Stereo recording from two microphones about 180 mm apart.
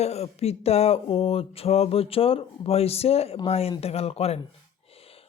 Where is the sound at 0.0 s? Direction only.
35° left (ahead or behind).